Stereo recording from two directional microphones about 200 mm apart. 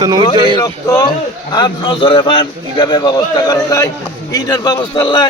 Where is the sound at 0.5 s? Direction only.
20° left (ahead or behind).